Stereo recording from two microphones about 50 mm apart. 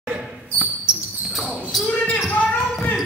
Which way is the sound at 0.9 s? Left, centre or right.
Right.